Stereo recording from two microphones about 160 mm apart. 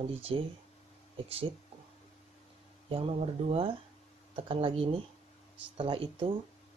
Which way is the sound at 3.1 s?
35° right (ahead or behind).